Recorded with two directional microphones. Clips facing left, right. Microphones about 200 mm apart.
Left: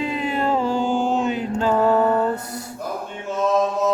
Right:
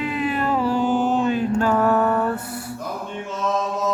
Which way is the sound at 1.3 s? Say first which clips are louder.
Right 1 dB; 20° left (ahead or behind).